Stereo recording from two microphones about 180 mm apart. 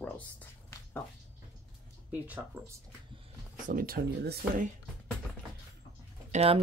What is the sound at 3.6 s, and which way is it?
Speech, 55° right (ahead or behind).